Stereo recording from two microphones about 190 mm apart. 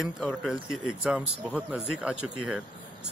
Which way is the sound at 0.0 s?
Centre (ahead or behind).